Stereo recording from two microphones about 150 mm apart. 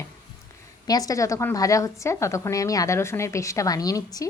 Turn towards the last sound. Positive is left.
turn(degrees=25)  # may be behind; listen again after turning